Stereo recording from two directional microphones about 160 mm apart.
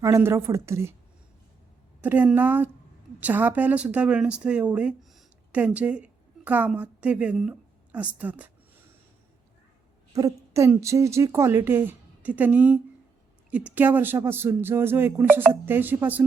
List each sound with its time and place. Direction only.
0.0 s a woman's voice: 15° right (ahead or behind)
2.0 s a woman's voice: 10° right (ahead or behind)
10.1 s a woman's voice: 20° right (ahead or behind)